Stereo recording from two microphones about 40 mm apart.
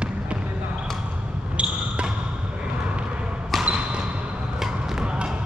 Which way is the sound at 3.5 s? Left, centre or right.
Centre.